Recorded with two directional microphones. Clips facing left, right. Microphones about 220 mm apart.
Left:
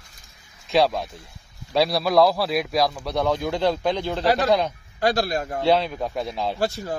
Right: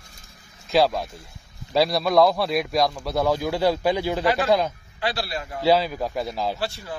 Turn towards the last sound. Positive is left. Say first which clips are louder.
# left 5 dB
turn(degrees=45)  # may be behind; listen again after turning